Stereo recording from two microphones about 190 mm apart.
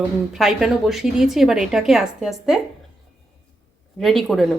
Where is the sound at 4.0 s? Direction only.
Centre (ahead or behind).